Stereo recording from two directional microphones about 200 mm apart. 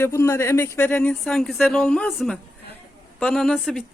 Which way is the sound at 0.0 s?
15° left (ahead or behind).